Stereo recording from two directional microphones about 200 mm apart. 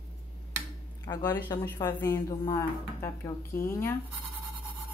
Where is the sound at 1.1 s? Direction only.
20° left (ahead or behind).